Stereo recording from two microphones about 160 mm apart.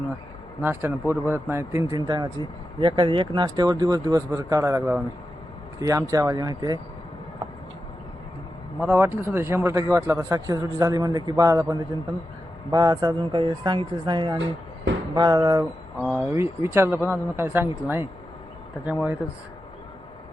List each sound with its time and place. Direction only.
0.6 s speech: 15° right (ahead or behind)
8.8 s speech: 15° right (ahead or behind)